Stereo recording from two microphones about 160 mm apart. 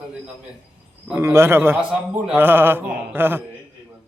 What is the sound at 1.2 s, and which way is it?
A man's voice, 15° right (ahead or behind).